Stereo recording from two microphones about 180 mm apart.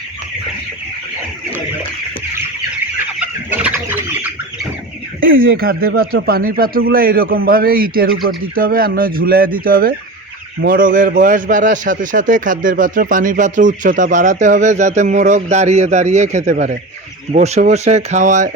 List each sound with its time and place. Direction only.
3.2 s chicken: 10° right (ahead or behind)
5.2 s a man's voice: 55° right (ahead or behind)